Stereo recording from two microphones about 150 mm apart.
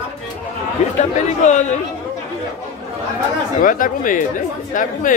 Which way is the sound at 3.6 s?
65° left (ahead or behind).